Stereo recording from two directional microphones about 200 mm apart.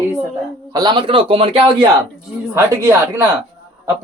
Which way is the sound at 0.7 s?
20° right (ahead or behind).